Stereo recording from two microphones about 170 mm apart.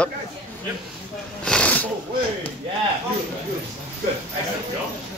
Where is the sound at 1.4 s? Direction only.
5° left (ahead or behind).